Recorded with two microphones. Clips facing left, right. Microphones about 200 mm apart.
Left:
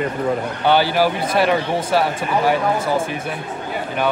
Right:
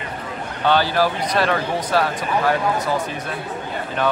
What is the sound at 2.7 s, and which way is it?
Speech, 25° left (ahead or behind).